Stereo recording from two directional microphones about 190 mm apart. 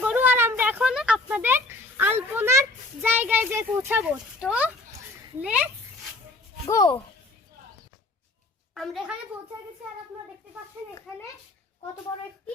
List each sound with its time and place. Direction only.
0.0 s a sound: 10° right (ahead or behind)
5.4 s a child's voice: 5° right (ahead or behind)
6.7 s speech: 20° left (ahead or behind)
8.7 s a child's voice: centre (ahead or behind)